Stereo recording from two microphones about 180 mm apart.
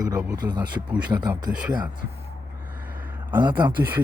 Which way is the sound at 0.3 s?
25° right (ahead or behind).